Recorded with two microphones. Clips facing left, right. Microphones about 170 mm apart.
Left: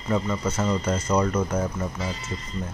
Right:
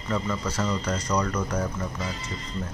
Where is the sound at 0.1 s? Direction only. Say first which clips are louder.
Left 3 dB; 20° left (ahead or behind).